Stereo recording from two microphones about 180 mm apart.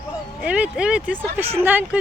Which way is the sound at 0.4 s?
5° right (ahead or behind).